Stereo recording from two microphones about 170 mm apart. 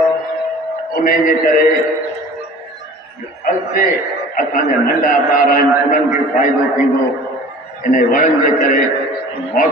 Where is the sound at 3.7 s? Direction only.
55° left (ahead or behind).